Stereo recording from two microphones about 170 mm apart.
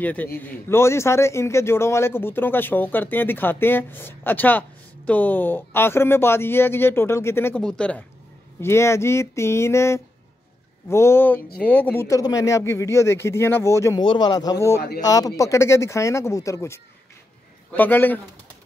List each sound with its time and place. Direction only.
0.0 s a man's voice: 10° left (ahead or behind)